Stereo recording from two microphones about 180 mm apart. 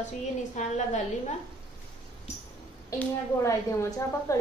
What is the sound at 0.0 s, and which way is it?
Speech, 40° left (ahead or behind).